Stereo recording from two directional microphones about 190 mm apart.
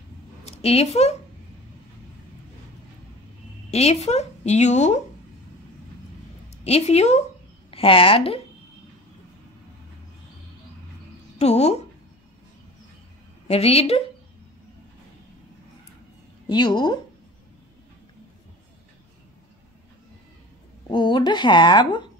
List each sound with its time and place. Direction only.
0.5 s a woman's voice: 35° left (ahead or behind)
3.7 s a woman's voice: 35° left (ahead or behind)
6.6 s a woman's voice: 35° left (ahead or behind)
11.3 s speech: 35° left (ahead or behind)
13.5 s a woman's voice: 30° left (ahead or behind)
16.4 s speech: 25° left (ahead or behind)
20.9 s speech: 25° left (ahead or behind)